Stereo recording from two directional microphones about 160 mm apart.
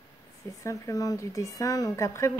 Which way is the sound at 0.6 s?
20° left (ahead or behind).